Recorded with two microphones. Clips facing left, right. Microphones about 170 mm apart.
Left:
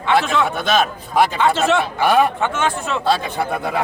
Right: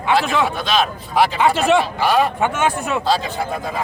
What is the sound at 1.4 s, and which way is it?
Speech, 10° right (ahead or behind).